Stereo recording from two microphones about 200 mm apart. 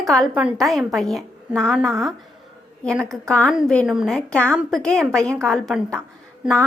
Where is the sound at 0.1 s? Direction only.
Centre (ahead or behind).